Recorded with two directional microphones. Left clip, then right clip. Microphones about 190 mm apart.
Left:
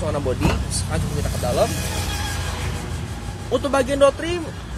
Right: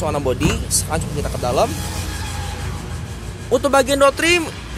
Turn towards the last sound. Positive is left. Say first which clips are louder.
# right 3 dB
turn(degrees=-15)  # may be behind; listen again after turning